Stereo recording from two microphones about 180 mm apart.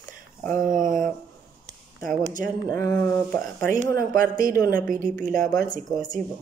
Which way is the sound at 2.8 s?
10° left (ahead or behind).